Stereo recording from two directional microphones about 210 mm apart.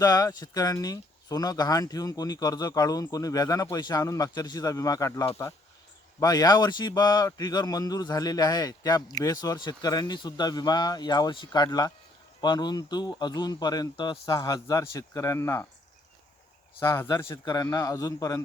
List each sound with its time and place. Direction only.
0.0 s a man's voice: 15° left (ahead or behind)
16.8 s speech: 15° left (ahead or behind)